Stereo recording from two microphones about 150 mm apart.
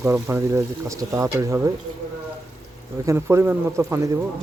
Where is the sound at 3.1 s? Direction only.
20° right (ahead or behind).